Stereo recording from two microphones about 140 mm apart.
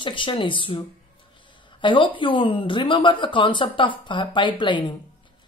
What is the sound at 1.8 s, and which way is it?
Speech, 35° left (ahead or behind).